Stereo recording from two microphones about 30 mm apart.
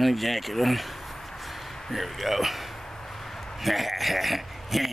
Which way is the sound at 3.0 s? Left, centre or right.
Centre.